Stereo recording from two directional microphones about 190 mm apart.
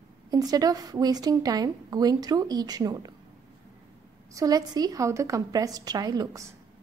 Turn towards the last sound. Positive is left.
turn(degrees=-20)  # may be behind; listen again after turning